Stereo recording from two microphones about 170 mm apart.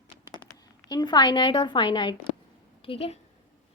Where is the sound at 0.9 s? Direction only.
25° left (ahead or behind).